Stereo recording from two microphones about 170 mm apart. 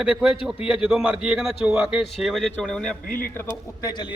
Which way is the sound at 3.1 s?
60° left (ahead or behind).